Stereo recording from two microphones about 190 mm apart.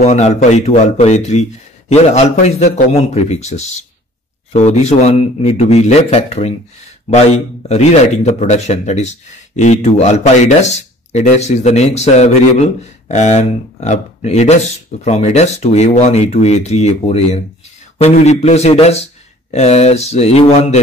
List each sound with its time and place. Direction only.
0.0 s speech: 35° left (ahead or behind)
7.6 s speech: 35° left (ahead or behind)